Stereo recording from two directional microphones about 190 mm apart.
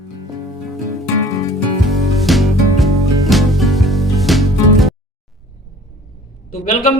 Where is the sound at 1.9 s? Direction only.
Centre (ahead or behind).